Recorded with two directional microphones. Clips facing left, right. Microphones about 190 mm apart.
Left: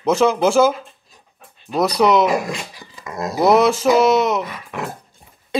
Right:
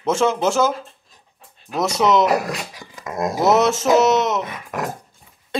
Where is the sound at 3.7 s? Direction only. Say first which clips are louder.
Left 1 dB; 25° right (ahead or behind).